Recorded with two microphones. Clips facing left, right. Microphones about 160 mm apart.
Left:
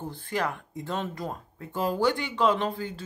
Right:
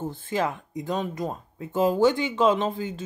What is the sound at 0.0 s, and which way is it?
Speech, 20° right (ahead or behind).